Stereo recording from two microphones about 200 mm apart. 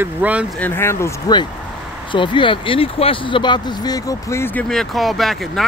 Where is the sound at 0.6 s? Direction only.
10° left (ahead or behind).